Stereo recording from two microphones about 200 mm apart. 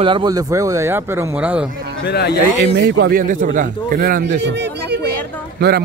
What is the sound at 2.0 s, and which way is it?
Speech, 55° left (ahead or behind).